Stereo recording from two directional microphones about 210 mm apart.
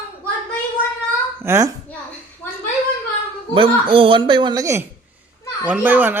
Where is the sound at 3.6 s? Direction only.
25° right (ahead or behind).